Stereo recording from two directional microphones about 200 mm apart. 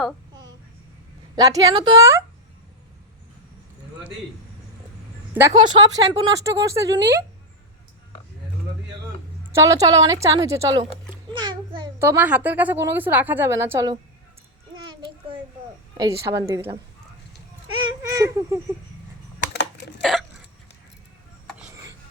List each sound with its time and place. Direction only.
1.4 s a woman's voice: 20° right (ahead or behind)
5.3 s a woman's voice: 15° right (ahead or behind)
9.5 s a woman's voice: 15° right (ahead or behind)
11.3 s a sound: 20° right (ahead or behind)
11.9 s a woman's voice: 10° right (ahead or behind)
16.0 s a woman's voice: 15° right (ahead or behind)
18.1 s a sound: 15° right (ahead or behind)
20.0 s hiccup: centre (ahead or behind)